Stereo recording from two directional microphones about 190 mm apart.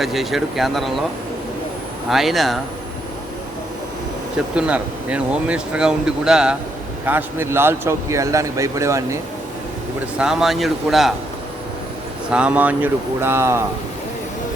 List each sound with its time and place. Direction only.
0.0 s speech: centre (ahead or behind)
2.0 s speech: centre (ahead or behind)
4.5 s speech: 5° right (ahead or behind)
10.2 s speech: centre (ahead or behind)
12.3 s speech: 5° right (ahead or behind)